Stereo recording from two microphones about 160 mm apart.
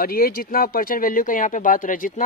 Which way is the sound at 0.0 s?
65° left (ahead or behind).